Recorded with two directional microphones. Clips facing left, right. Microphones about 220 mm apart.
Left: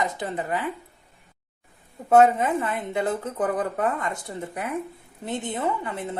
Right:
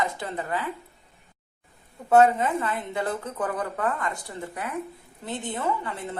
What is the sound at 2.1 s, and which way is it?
Speech, 20° left (ahead or behind).